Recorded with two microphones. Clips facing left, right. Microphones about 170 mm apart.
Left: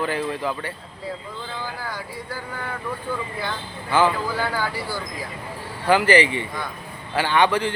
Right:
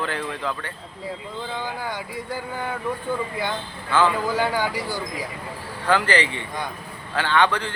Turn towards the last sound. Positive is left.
turn(degrees=10)  # may be behind; listen again after turning